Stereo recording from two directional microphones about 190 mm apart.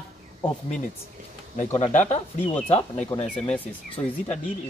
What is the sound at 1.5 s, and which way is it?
Speech, 40° left (ahead or behind).